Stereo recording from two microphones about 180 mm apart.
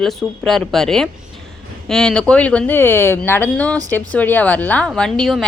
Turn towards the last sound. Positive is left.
turn(degrees=0)  # may be behind; listen again after turning